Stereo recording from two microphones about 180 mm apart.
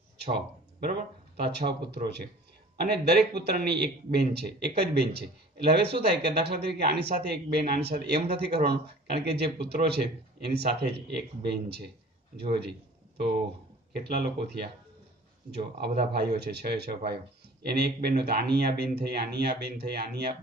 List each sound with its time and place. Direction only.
0.7 s speech: 60° right (ahead or behind)
12.4 s speech: 65° right (ahead or behind)
13.9 s speech: 65° right (ahead or behind)